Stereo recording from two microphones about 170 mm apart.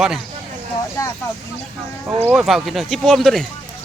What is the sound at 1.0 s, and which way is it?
Speech, 20° left (ahead or behind).